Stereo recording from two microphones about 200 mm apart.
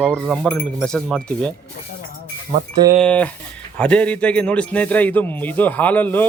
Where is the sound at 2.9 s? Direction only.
5° left (ahead or behind).